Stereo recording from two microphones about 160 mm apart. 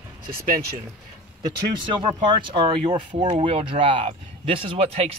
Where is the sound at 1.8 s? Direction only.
30° right (ahead or behind).